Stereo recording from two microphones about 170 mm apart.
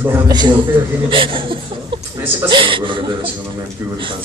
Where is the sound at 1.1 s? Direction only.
30° right (ahead or behind).